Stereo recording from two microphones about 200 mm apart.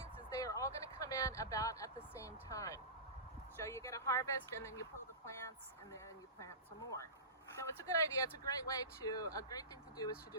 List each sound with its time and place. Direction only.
0.3 s a sound: 15° left (ahead or behind)
3.6 s speech: 15° left (ahead or behind)
6.4 s speech: 15° left (ahead or behind)